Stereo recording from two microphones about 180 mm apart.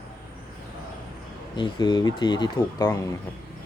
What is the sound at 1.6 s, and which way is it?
Speech, 25° left (ahead or behind).